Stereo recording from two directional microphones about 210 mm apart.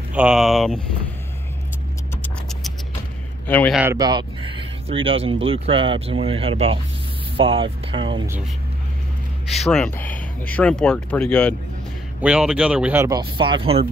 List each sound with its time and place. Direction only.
0.1 s speech: 5° right (ahead or behind)
3.4 s a man's voice: 5° left (ahead or behind)
3.7 s speech: 10° right (ahead or behind)
9.6 s speech: 5° left (ahead or behind)
13.2 s speech: 25° right (ahead or behind)